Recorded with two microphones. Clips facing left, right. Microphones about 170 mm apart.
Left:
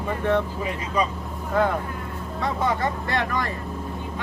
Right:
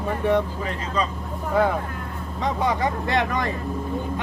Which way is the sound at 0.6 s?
10° left (ahead or behind).